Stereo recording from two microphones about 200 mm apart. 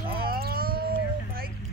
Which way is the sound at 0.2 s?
50° right (ahead or behind).